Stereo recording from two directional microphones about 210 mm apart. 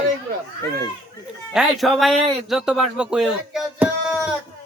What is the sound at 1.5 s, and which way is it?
Speech, centre (ahead or behind).